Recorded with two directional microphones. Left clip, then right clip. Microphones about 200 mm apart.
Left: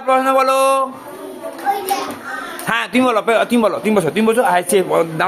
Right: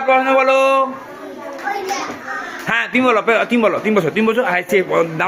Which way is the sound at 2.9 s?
5° left (ahead or behind).